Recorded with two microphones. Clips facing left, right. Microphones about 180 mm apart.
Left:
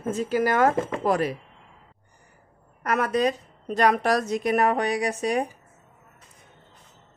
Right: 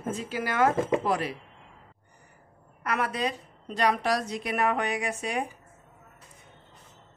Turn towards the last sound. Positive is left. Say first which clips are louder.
# left 6 dB
turn(degrees=40)  # may be behind; listen again after turning